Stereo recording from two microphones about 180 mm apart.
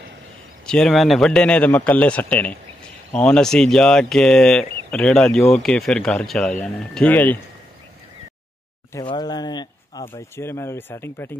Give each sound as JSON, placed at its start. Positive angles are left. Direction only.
{"t": 0.7, "sound": "a man's voice", "side_deg": 5}
{"t": 8.9, "sound": "a man's voice", "side_deg": 20}